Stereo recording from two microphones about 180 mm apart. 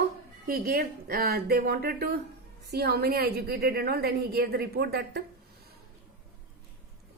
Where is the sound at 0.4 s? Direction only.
55° right (ahead or behind).